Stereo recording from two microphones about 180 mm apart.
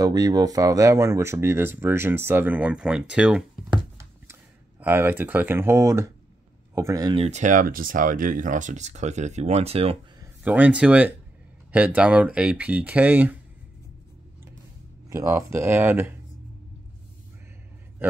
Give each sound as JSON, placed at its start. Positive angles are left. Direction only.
{"t": 0.0, "sound": "speech", "side_deg": -20}
{"t": 3.7, "sound": "a sound", "side_deg": -15}
{"t": 6.7, "sound": "speech", "side_deg": -15}
{"t": 7.2, "sound": "speech", "side_deg": -40}
{"t": 10.2, "sound": "speech", "side_deg": -10}
{"t": 15.0, "sound": "speech", "side_deg": -15}